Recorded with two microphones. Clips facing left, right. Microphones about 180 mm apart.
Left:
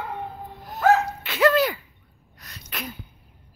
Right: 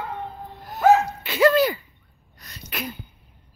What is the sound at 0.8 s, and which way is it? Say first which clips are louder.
Dog: right 2 dB; 5° right (ahead or behind).